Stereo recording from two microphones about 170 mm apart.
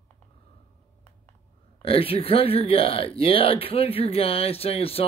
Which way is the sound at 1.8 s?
35° left (ahead or behind).